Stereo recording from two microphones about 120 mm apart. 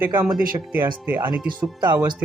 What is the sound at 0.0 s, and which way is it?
Speech, 15° right (ahead or behind).